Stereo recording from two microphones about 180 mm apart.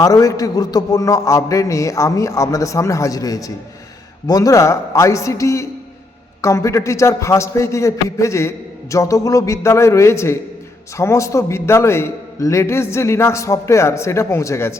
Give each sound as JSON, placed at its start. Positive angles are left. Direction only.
{"t": 0.0, "sound": "a man's voice", "side_deg": 20}